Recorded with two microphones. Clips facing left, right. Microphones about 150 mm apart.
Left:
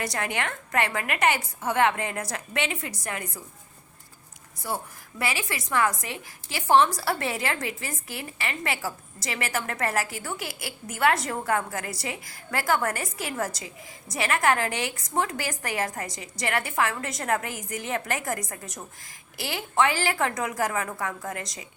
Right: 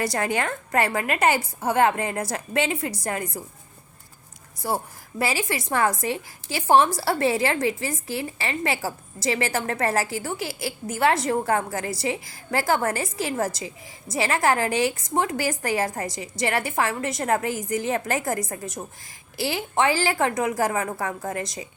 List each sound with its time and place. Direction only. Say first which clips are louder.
0.0 s a woman's voice: right 5 dB; 30° right (ahead or behind)
5.2 s a woman's voice: right 5 dB; 30° right (ahead or behind)